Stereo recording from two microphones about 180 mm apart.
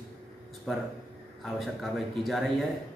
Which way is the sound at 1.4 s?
Centre (ahead or behind).